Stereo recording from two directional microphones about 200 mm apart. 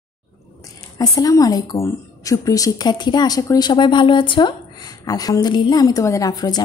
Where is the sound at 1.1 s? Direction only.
15° left (ahead or behind).